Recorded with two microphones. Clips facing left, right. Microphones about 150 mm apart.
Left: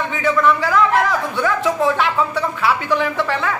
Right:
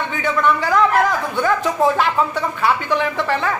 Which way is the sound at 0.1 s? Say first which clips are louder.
Left 2 dB; centre (ahead or behind).